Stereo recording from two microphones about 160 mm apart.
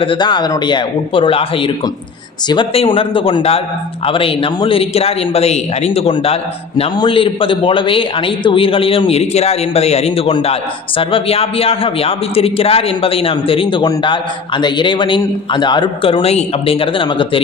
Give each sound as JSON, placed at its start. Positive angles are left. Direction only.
{"t": 0.0, "sound": "a man's voice", "side_deg": 30}